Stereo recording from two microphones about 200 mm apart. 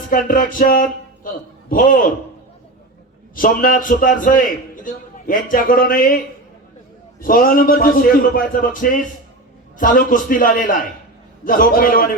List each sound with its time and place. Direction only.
0.1 s a man's voice: 45° left (ahead or behind)
3.3 s a man's voice: 45° left (ahead or behind)